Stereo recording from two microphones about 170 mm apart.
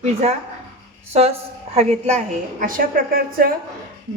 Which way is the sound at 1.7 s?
40° right (ahead or behind).